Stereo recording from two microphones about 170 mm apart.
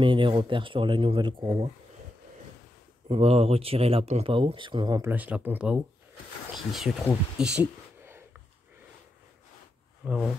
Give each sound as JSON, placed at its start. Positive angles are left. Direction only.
{"t": 0.0, "sound": "speech", "side_deg": -30}
{"t": 3.1, "sound": "speech", "side_deg": -35}
{"t": 5.1, "sound": "speech", "side_deg": -10}
{"t": 7.3, "sound": "a sound", "side_deg": -5}
{"t": 10.0, "sound": "speech", "side_deg": -5}